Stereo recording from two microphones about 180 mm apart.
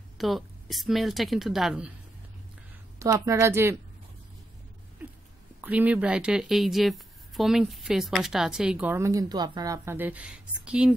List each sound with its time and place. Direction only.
0.2 s speech: centre (ahead or behind)
3.0 s a woman's voice: 15° right (ahead or behind)
5.6 s speech: 10° right (ahead or behind)